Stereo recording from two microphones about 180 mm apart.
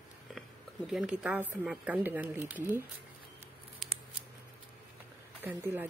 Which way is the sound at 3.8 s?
Centre (ahead or behind).